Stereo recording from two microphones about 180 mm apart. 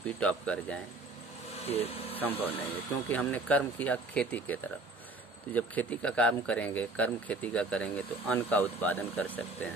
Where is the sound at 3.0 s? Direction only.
10° left (ahead or behind).